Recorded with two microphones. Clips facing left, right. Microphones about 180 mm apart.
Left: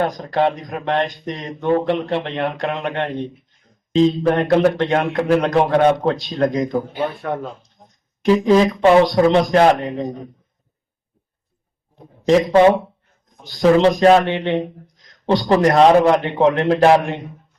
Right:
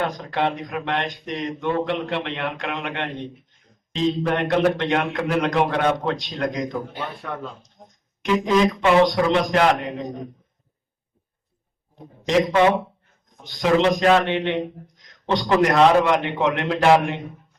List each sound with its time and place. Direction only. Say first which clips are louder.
0.0 s speech: left 5 dB; 40° left (ahead or behind)
8.2 s speech: left 5 dB; 35° left (ahead or behind)
12.2 s speech: left 5 dB; 35° left (ahead or behind)